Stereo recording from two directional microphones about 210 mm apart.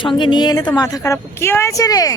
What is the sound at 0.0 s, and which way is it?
A woman's voice, 20° left (ahead or behind).